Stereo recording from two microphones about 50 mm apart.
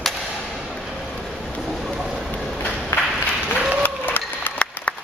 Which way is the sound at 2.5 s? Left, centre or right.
Left.